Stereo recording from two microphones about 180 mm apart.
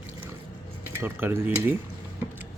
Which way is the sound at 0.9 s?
10° right (ahead or behind).